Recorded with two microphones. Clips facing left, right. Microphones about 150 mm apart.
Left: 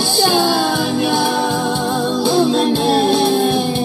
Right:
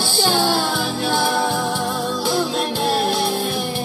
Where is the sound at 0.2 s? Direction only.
20° left (ahead or behind).